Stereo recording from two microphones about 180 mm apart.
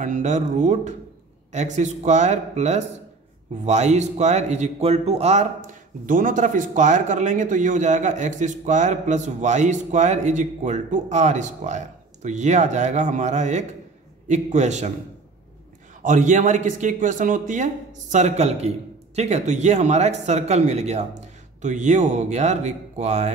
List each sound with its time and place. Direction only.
0.0 s speech: 45° right (ahead or behind)
16.0 s speech: 45° right (ahead or behind)